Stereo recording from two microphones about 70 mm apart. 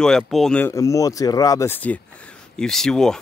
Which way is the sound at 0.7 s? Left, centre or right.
Left.